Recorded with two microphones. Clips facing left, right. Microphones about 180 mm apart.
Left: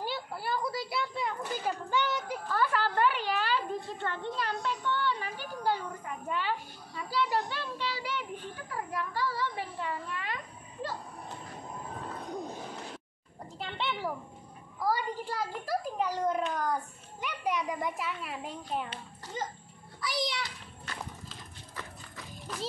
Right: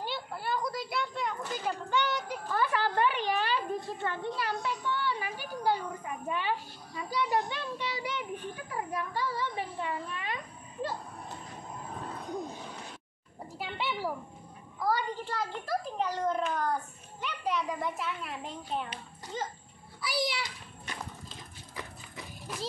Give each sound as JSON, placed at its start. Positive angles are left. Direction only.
{"t": 0.0, "sound": "a sound", "side_deg": 5}
{"t": 2.4, "sound": "a woman's voice", "side_deg": -15}
{"t": 13.6, "sound": "a woman's voice", "side_deg": -5}
{"t": 14.8, "sound": "a child's voice", "side_deg": 10}
{"t": 20.0, "sound": "a child's voice", "side_deg": -5}
{"t": 21.7, "sound": "a sound", "side_deg": -15}